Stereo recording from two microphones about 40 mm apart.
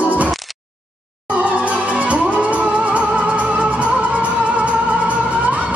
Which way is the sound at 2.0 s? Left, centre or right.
Right.